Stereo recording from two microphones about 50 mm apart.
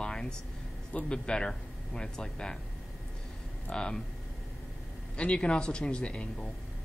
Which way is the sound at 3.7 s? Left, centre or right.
Centre.